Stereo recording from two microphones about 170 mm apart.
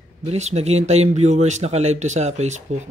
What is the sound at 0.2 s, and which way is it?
Speech, 40° right (ahead or behind).